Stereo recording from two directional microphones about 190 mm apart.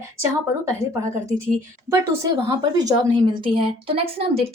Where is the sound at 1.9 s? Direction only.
15° right (ahead or behind).